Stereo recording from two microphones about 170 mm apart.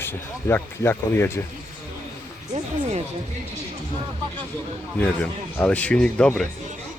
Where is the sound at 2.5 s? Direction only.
40° right (ahead or behind).